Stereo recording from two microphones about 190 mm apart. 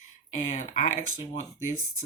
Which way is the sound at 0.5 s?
40° left (ahead or behind).